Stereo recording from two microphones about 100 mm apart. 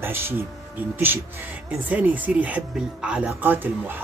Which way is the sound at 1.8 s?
15° right (ahead or behind).